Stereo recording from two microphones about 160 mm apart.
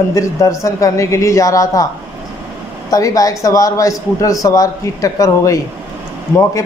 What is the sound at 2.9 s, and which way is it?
A man's voice, 20° left (ahead or behind).